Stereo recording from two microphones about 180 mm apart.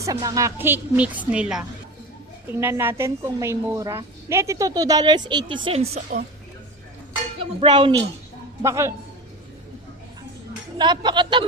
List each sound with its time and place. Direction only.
0.0 s a woman's voice: 20° right (ahead or behind); by 6.0 s 35° right (ahead or behind)
7.6 s a woman's voice: 25° right (ahead or behind)
10.8 s a woman's voice: 25° right (ahead or behind)